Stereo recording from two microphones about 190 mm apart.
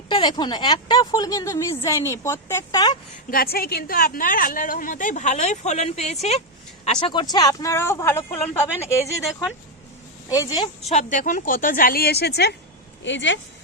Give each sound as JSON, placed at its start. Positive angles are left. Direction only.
{"t": 0.1, "sound": "a woman's voice", "side_deg": 25}
{"t": 3.2, "sound": "a woman's voice", "side_deg": 50}
{"t": 10.2, "sound": "a woman's voice", "side_deg": 20}
{"t": 10.8, "sound": "a woman's voice", "side_deg": 40}
{"t": 13.0, "sound": "speech", "side_deg": 70}